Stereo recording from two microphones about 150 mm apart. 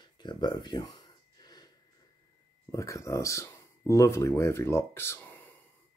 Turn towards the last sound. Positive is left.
turn(degrees=15)  # may be behind; listen again after turning